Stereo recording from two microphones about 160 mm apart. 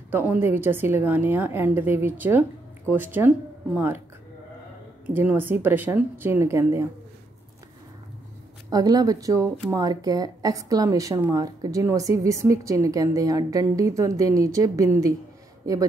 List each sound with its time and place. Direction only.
0.1 s a woman's voice: 10° right (ahead or behind)
5.1 s a woman's voice: 10° right (ahead or behind)
8.6 s speech: 25° right (ahead or behind)